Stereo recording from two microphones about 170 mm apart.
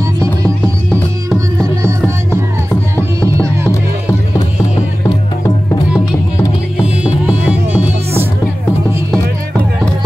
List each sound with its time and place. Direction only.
1.6 s music: 20° right (ahead or behind)
3.2 s music: 15° right (ahead or behind)
6.8 s music: 5° right (ahead or behind)